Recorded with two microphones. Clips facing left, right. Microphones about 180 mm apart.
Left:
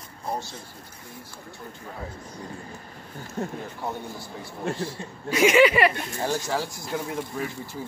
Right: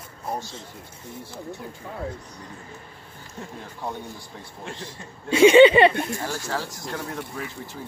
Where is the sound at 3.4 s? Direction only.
50° left (ahead or behind).